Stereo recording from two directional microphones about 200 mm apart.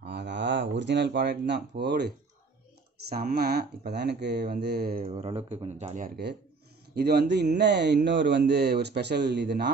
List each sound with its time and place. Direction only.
0.0 s speech: 60° right (ahead or behind)
5.0 s speech: 30° right (ahead or behind)
7.0 s speech: 55° right (ahead or behind)